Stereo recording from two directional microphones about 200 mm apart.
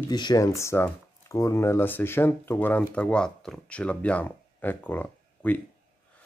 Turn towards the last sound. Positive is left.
turn(degrees=10)  # may be behind; listen again after turning